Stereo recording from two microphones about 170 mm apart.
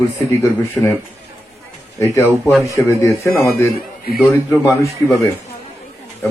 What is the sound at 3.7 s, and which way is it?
Speech, 60° left (ahead or behind).